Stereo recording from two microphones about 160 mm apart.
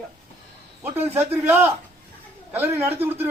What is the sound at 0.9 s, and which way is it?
A man's voice, 15° right (ahead or behind).